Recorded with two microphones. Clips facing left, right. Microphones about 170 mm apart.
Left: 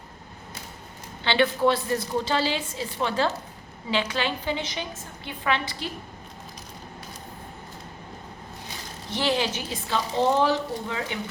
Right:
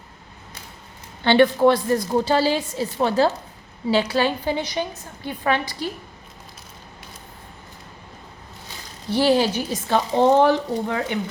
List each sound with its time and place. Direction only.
1.2 s a woman's voice: 50° right (ahead or behind)
9.0 s a woman's voice: 35° right (ahead or behind); by 11.2 s 55° right (ahead or behind)